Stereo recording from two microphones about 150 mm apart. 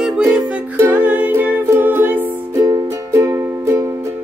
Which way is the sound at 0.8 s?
10° right (ahead or behind).